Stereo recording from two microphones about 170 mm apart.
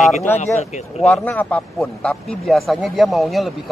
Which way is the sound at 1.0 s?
10° left (ahead or behind).